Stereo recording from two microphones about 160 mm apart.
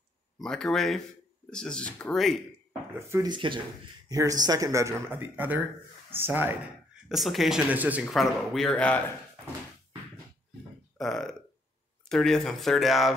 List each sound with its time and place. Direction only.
0.4 s speech: 5° left (ahead or behind)
3.1 s speech: 25° right (ahead or behind)
7.1 s speech: centre (ahead or behind)
8.0 s speech: centre (ahead or behind)
11.0 s speech: centre (ahead or behind)